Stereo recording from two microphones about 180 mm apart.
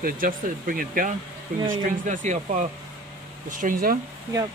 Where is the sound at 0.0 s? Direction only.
50° right (ahead or behind).